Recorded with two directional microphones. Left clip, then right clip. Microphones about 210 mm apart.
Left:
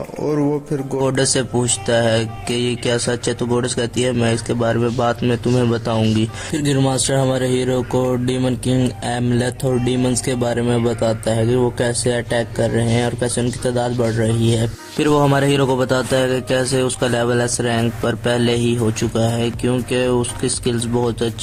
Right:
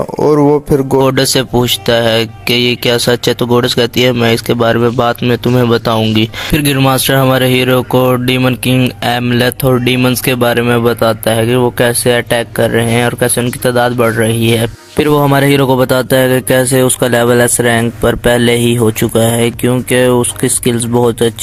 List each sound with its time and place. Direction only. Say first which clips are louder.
0.2 s speech: right 11 dB; 35° right (ahead or behind)
7.3 s speech: right 9 dB; 30° right (ahead or behind)